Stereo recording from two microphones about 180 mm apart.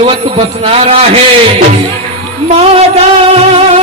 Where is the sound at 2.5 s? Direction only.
35° right (ahead or behind).